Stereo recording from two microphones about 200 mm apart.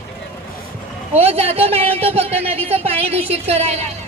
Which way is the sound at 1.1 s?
30° right (ahead or behind).